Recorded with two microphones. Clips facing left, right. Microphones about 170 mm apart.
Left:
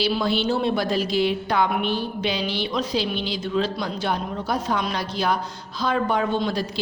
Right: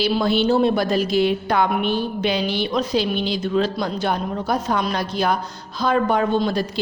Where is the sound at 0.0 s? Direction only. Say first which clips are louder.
Right 4 dB; 50° right (ahead or behind).